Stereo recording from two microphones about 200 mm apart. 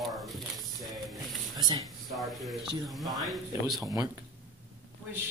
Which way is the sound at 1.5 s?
20° right (ahead or behind).